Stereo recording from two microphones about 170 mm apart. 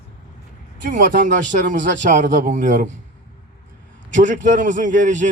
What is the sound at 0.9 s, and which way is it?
A man's voice, 50° right (ahead or behind).